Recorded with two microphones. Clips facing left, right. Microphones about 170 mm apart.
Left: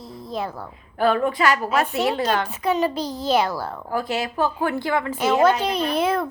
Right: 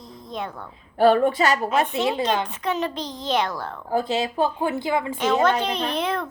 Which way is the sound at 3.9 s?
20° right (ahead or behind).